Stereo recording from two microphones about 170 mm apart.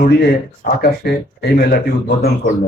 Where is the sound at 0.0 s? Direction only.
70° left (ahead or behind).